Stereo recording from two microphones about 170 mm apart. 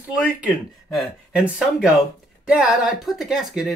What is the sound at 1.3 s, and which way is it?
Speech, 5° right (ahead or behind).